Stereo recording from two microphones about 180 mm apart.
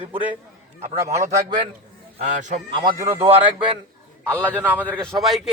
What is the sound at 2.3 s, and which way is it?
Speech, 45° right (ahead or behind).